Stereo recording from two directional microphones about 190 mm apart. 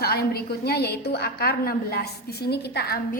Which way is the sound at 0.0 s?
55° left (ahead or behind).